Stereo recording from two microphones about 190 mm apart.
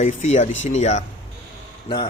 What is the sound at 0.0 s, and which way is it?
Speech, 40° left (ahead or behind).